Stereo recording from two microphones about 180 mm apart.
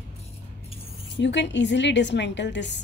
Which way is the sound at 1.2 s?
75° left (ahead or behind).